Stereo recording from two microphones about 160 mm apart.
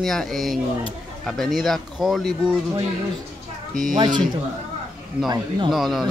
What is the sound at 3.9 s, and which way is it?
Speech, 25° right (ahead or behind).